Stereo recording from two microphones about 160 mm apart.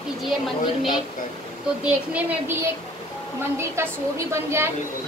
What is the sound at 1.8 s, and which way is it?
A woman's voice, 10° right (ahead or behind).